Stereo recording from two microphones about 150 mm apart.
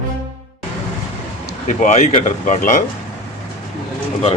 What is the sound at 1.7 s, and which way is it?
Speech, 55° left (ahead or behind).